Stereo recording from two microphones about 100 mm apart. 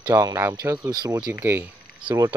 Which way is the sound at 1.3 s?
20° right (ahead or behind).